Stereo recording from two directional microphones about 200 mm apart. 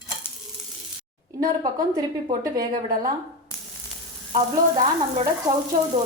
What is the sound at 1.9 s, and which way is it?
Speech, 20° right (ahead or behind).